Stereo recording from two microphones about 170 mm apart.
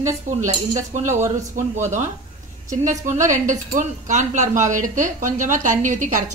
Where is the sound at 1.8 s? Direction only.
45° right (ahead or behind).